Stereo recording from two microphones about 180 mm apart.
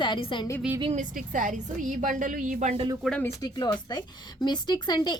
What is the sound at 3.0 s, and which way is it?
Speech, 5° left (ahead or behind).